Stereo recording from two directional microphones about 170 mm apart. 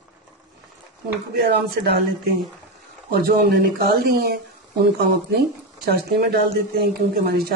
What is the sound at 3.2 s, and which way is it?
Speech, 65° right (ahead or behind).